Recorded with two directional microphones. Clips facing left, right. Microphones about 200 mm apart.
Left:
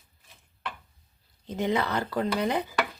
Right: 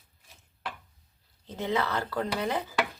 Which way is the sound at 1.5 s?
15° left (ahead or behind).